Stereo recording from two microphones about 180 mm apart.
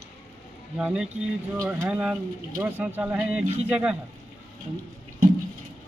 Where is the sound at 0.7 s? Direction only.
5° right (ahead or behind).